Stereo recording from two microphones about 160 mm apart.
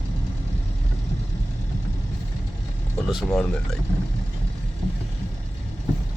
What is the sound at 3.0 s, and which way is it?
Speech, centre (ahead or behind).